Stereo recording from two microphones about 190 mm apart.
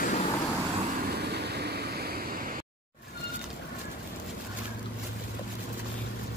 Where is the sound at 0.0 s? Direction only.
40° left (ahead or behind).